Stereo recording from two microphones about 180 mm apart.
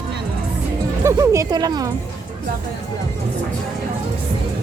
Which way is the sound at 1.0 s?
15° right (ahead or behind).